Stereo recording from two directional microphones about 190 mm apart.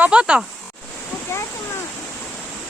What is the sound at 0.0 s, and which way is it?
Speech, 5° right (ahead or behind).